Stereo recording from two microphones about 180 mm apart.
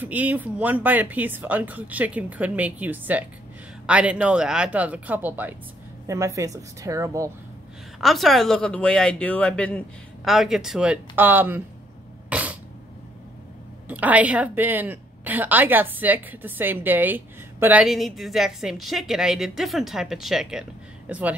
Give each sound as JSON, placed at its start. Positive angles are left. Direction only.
{"t": 0.0, "sound": "a woman's voice", "side_deg": -10}
{"t": 8.0, "sound": "speech", "side_deg": 0}
{"t": 12.3, "sound": "cough", "side_deg": -5}
{"t": 13.8, "sound": "a woman's voice", "side_deg": -10}